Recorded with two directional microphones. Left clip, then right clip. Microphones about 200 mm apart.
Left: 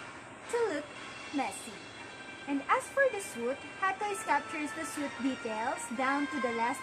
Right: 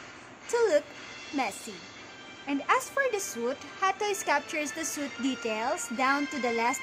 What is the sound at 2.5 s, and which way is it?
Speech, 55° right (ahead or behind).